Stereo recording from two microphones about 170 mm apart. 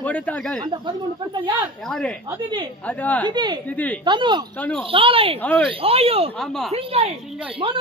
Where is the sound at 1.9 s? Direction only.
5° left (ahead or behind).